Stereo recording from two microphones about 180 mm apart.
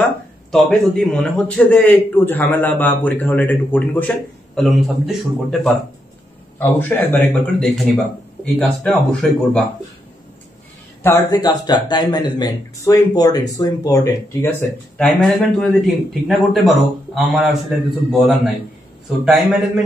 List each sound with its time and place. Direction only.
0.0 s a man's voice: 5° left (ahead or behind)
11.0 s a man's voice: 15° left (ahead or behind); by 17.7 s centre (ahead or behind)
19.0 s a man's voice: centre (ahead or behind)